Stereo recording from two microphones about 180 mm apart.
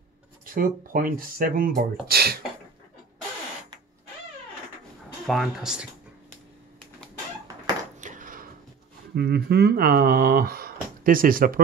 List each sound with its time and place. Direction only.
0.5 s speech: 50° right (ahead or behind)
5.2 s speech: centre (ahead or behind)
8.0 s a sound: 45° right (ahead or behind)
9.1 s speech: 60° right (ahead or behind)